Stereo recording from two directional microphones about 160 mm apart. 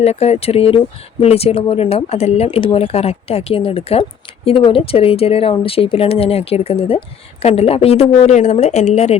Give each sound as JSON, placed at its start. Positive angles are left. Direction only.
{"t": 0.0, "sound": "speech", "side_deg": 40}